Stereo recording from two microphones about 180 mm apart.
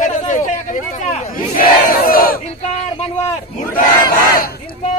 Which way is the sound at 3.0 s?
35° left (ahead or behind).